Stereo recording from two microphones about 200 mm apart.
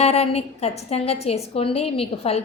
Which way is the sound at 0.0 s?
30° left (ahead or behind).